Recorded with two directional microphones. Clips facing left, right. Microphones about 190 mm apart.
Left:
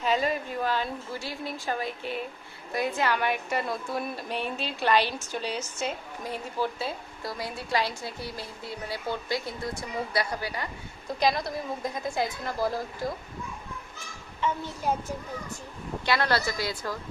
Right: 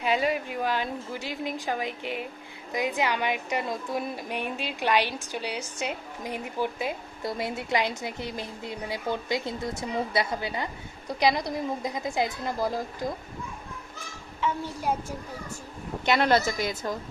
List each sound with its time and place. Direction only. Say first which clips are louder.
0.0 s a woman's voice: right 1 dB; 10° right (ahead or behind)
14.4 s a woman's voice: even; 10° right (ahead or behind)
16.0 s a woman's voice: right 4 dB; 20° right (ahead or behind)